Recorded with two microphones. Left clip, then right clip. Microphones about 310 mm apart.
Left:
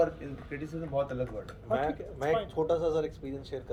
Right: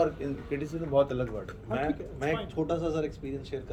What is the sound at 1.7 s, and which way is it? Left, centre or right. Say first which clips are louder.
Speech: left 1 dB; left.